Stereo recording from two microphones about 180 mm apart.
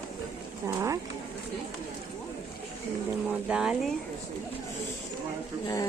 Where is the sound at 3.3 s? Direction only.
5° right (ahead or behind).